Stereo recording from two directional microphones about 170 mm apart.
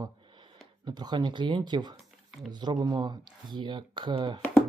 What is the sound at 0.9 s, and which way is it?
Speech, 25° right (ahead or behind).